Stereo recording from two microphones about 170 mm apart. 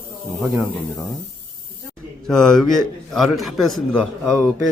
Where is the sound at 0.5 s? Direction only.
Centre (ahead or behind).